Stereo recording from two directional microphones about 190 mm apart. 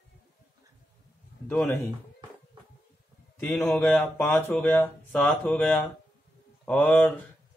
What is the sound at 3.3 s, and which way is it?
Speech, centre (ahead or behind).